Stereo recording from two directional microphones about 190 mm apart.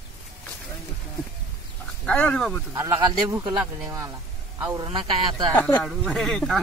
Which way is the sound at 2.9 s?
20° right (ahead or behind).